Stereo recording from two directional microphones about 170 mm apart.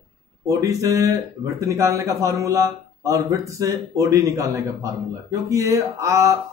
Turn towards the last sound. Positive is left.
turn(degrees=-15)  # may be behind; listen again after turning